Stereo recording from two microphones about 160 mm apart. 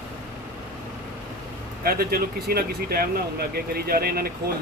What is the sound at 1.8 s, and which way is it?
Speech, 75° right (ahead or behind).